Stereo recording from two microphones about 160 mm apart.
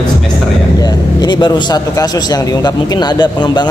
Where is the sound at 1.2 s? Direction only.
25° left (ahead or behind).